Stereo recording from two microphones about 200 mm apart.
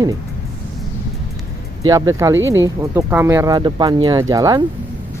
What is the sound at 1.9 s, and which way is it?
Speech, 15° right (ahead or behind).